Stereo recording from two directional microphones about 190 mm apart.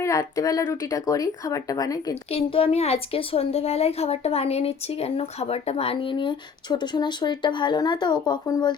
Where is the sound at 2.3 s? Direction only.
30° left (ahead or behind).